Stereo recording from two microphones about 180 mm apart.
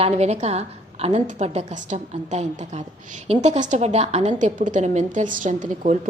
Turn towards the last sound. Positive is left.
turn(degrees=-45)  # may be behind; listen again after turning